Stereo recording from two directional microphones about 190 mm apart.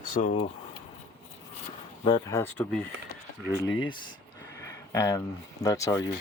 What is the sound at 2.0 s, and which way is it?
Speech, 25° left (ahead or behind).